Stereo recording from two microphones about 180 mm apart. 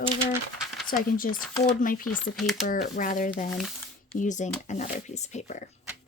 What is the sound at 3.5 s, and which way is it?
Speech, centre (ahead or behind).